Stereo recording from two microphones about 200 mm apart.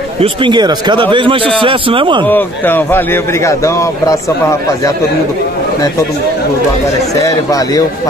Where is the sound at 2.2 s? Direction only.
10° left (ahead or behind).